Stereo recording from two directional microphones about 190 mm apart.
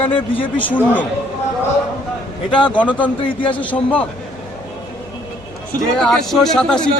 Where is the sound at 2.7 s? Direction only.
5° left (ahead or behind).